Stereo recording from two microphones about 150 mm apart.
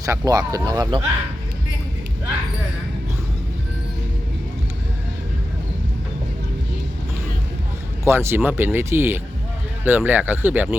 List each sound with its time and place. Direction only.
0.0 s speech: 25° right (ahead or behind)
8.0 s speech: 15° right (ahead or behind)